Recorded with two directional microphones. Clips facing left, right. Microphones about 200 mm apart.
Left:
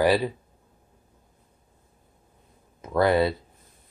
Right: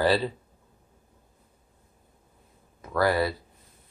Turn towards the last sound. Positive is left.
turn(degrees=20)  # may be behind; listen again after turning